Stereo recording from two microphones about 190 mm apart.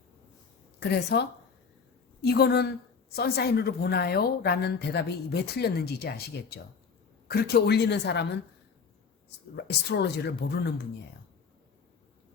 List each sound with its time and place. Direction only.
0.8 s a woman's voice: 60° left (ahead or behind)
2.2 s a woman's voice: 60° left (ahead or behind)
7.3 s a woman's voice: 55° left (ahead or behind)
9.6 s a woman's voice: 60° left (ahead or behind)